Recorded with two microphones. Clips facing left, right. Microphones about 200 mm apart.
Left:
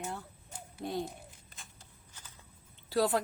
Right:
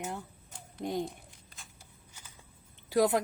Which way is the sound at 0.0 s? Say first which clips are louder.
Right 2 dB; 20° right (ahead or behind).